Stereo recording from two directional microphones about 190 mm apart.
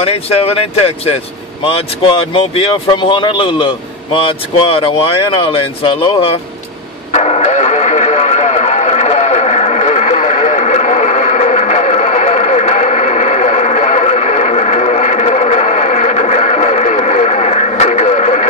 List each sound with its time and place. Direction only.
0.0 s speech: 30° left (ahead or behind)
7.1 s radio: 35° left (ahead or behind)